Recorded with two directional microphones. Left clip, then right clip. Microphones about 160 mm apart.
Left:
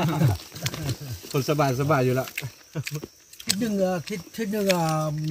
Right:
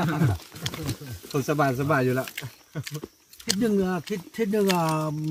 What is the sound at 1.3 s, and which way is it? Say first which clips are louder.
Speech: even; 40° right (ahead or behind).